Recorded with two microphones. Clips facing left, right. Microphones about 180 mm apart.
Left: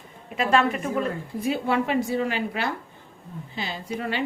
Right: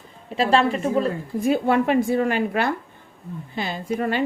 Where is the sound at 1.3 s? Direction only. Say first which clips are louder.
Right 5 dB; 50° right (ahead or behind).